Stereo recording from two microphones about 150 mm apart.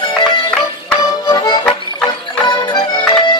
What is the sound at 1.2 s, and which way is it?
Accordion, 25° left (ahead or behind).